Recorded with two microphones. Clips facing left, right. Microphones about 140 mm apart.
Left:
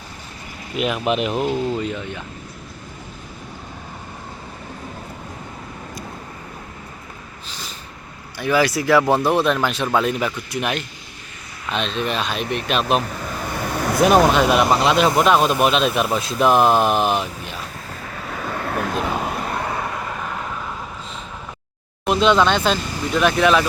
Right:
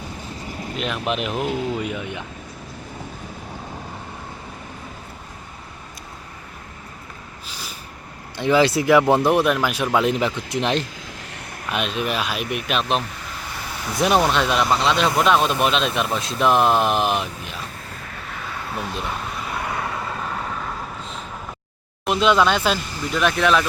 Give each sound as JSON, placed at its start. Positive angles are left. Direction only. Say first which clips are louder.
{"t": 0.7, "sound": "speech", "louder": "left 5 dB", "side_deg": 5}
{"t": 7.4, "sound": "snort", "louder": "left 1 dB", "side_deg": -10}
{"t": 8.4, "sound": "speech", "louder": "right 1 dB", "side_deg": -20}
{"t": 11.7, "sound": "speech", "louder": "left 1 dB", "side_deg": -10}
{"t": 13.2, "sound": "vehicle", "louder": "left 7 dB", "side_deg": 55}
{"t": 14.3, "sound": "speech", "louder": "left 4 dB", "side_deg": 5}
{"t": 18.4, "sound": "vehicle", "louder": "left 6 dB", "side_deg": 55}
{"t": 22.0, "sound": "speech", "louder": "left 2 dB", "side_deg": 0}